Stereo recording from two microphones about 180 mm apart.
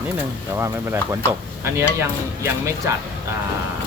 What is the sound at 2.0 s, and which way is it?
Speech, 15° right (ahead or behind).